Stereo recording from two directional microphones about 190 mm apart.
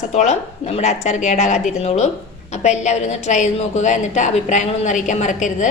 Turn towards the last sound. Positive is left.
turn(degrees=40)  # may be behind; listen again after turning